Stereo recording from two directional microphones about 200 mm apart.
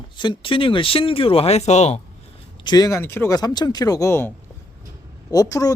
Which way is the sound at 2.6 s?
20° left (ahead or behind).